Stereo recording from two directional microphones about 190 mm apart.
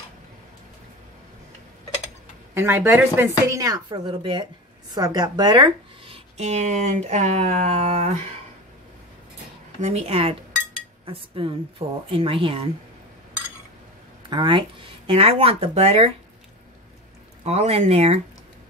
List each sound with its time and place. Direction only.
2.5 s speech: 10° right (ahead or behind); by 8.2 s 35° right (ahead or behind)
9.8 s speech: 35° right (ahead or behind)
14.3 s speech: 25° right (ahead or behind)
17.4 s speech: 35° right (ahead or behind)